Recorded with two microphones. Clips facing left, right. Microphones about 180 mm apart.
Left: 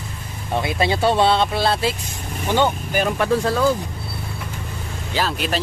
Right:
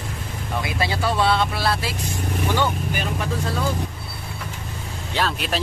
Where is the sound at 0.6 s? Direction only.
25° left (ahead or behind).